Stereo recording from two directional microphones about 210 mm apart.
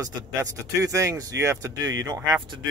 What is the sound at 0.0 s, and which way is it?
Speech, 15° right (ahead or behind).